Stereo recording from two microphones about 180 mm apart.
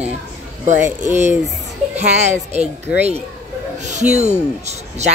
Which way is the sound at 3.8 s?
40° right (ahead or behind).